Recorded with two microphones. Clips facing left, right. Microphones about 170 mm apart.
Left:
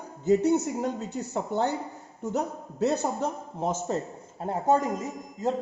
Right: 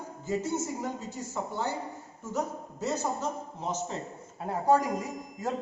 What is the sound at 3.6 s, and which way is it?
Speech, 50° left (ahead or behind).